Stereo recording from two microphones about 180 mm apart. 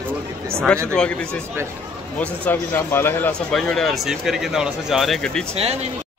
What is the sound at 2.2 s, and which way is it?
Speech, 10° left (ahead or behind).